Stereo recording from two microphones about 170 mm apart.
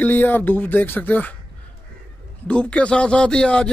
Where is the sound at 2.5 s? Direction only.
5° left (ahead or behind).